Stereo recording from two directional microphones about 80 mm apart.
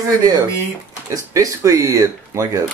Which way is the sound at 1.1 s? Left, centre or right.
Right.